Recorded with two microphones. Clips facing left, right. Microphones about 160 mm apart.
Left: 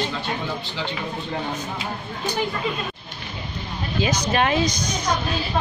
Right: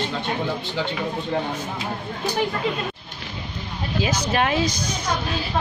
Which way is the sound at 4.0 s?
5° right (ahead or behind).